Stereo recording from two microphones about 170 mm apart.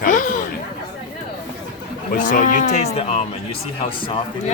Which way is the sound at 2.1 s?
50° left (ahead or behind).